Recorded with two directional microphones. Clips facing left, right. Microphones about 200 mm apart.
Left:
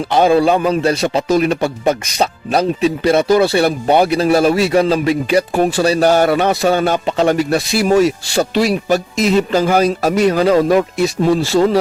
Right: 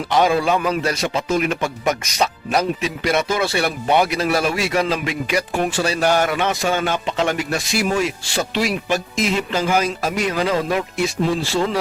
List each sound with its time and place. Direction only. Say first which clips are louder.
0.1 s a man's voice: left 5 dB; 30° left (ahead or behind)